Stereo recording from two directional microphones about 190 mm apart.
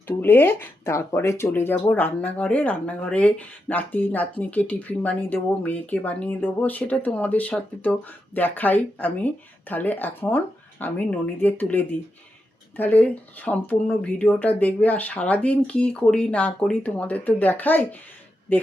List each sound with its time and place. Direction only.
0.2 s speech: 10° left (ahead or behind)